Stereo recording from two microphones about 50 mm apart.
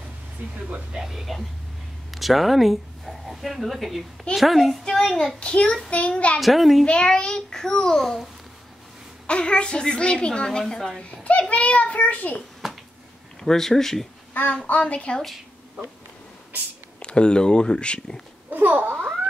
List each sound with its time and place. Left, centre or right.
0.4 s speech: right
1.0 s a child's voice: centre
4.9 s a child's voice: centre
5.4 s a child's voice: left
6.4 s a child's voice: centre
6.9 s a child's voice: centre
9.3 s a child's voice: left
13.4 s a child's voice: centre
14.3 s a child's voice: left
15.3 s a sound: centre
17.0 s a child's voice: centre
18.5 s a child's voice: right